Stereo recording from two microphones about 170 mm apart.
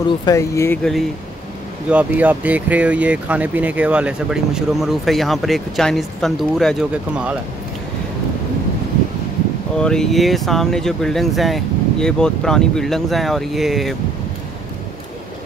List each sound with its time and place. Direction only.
0.2 s speech: 20° left (ahead or behind)
1.9 s speech: 10° right (ahead or behind)
9.8 s speech: 5° left (ahead or behind)